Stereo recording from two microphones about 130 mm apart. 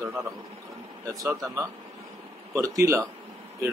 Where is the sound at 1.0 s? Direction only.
25° right (ahead or behind).